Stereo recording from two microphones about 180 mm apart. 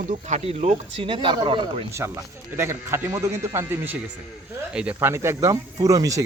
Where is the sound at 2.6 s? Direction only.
15° right (ahead or behind).